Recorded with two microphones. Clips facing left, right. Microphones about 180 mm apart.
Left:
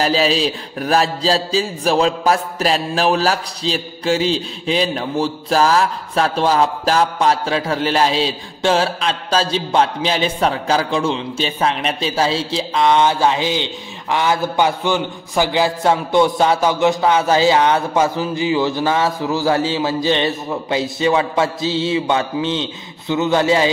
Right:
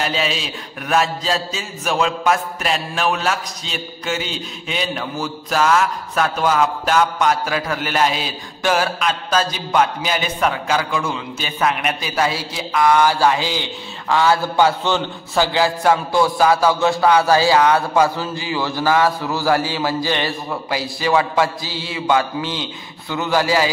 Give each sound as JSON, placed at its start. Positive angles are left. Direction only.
{"t": 0.0, "sound": "a man's voice", "side_deg": 35}